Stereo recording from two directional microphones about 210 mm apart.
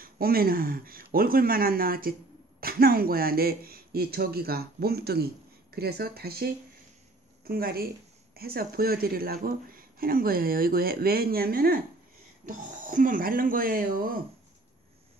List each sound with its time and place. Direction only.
0.0 s speech: 45° right (ahead or behind)